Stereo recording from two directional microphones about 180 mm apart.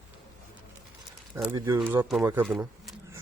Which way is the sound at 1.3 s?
15° right (ahead or behind).